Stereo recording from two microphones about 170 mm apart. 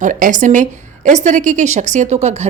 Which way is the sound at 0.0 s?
50° right (ahead or behind).